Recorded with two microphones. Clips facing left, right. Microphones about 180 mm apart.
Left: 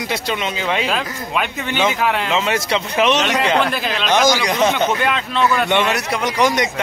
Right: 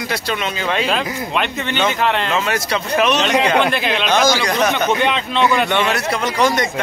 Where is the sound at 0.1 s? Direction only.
20° left (ahead or behind).